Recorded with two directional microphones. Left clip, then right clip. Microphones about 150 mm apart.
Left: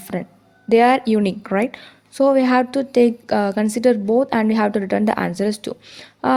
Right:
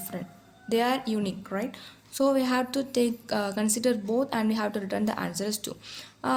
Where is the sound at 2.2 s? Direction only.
40° left (ahead or behind).